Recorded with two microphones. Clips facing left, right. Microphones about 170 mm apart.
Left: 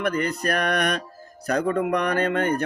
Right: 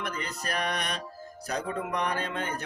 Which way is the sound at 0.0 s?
60° left (ahead or behind).